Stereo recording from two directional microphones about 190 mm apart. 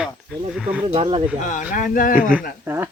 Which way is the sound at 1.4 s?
40° left (ahead or behind).